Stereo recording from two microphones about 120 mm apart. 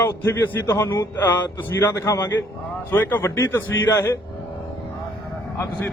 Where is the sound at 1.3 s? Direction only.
15° left (ahead or behind).